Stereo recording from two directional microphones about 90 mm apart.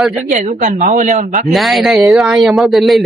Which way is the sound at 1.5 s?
Centre (ahead or behind).